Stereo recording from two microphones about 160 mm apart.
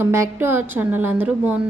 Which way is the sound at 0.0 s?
15° right (ahead or behind).